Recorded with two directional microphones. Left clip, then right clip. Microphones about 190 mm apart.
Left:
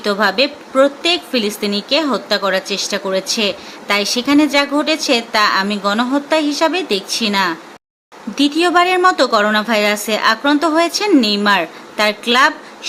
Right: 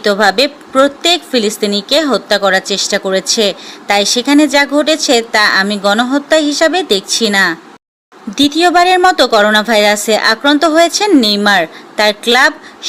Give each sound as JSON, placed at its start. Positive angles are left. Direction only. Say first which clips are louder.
{"t": 0.0, "sound": "a woman's voice", "louder": "right 5 dB", "side_deg": -25}